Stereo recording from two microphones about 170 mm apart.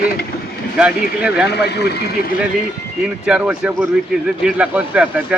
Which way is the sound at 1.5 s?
75° left (ahead or behind).